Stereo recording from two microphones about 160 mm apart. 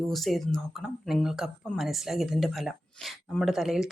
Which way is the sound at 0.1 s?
Centre (ahead or behind).